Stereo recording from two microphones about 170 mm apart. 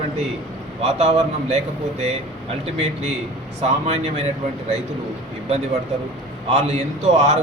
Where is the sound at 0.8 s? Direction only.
40° right (ahead or behind).